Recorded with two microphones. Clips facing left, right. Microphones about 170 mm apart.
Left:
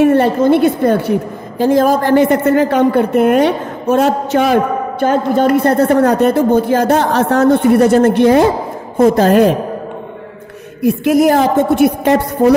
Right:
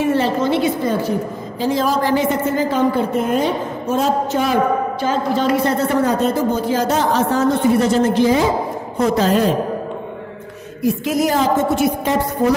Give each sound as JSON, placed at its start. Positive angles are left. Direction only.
{"t": 0.0, "sound": "a woman's voice", "side_deg": 55}
{"t": 1.6, "sound": "a woman's voice", "side_deg": 55}
{"t": 5.0, "sound": "a woman's voice", "side_deg": 55}
{"t": 8.9, "sound": "a woman's voice", "side_deg": 50}
{"t": 10.8, "sound": "a woman's voice", "side_deg": 60}